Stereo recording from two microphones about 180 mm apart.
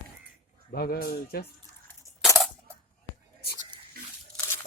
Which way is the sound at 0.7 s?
60° left (ahead or behind).